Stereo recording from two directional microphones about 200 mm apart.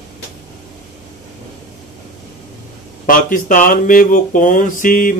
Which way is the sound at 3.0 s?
40° left (ahead or behind).